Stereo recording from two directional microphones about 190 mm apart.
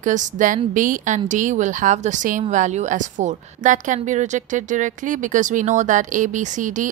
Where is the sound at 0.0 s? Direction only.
40° right (ahead or behind).